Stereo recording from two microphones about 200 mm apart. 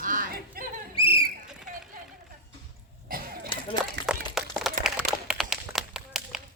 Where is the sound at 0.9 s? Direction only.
25° left (ahead or behind).